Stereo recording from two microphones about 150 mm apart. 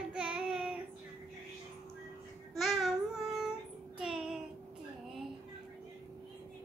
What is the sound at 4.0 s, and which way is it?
Child singing, 5° right (ahead or behind).